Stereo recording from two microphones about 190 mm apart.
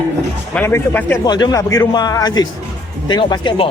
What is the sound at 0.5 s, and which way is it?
Speech, 10° left (ahead or behind).